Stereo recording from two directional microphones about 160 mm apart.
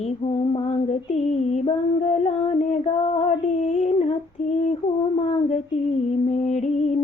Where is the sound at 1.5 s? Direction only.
40° left (ahead or behind).